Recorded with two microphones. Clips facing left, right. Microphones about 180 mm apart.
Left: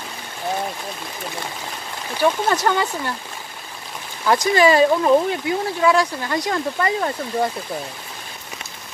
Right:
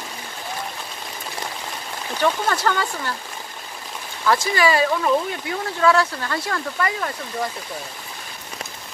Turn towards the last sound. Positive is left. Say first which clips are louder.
# left 5 dB
turn(degrees=30)  # may be behind; listen again after turning